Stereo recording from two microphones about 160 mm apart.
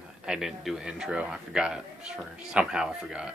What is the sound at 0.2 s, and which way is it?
A man's voice, 5° right (ahead or behind).